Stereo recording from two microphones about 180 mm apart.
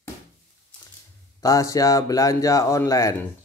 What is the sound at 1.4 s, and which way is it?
Speech, 20° left (ahead or behind).